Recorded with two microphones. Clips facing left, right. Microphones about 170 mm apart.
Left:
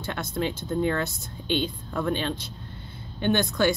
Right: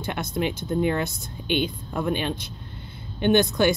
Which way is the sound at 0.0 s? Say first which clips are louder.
Right 2 dB; 15° right (ahead or behind).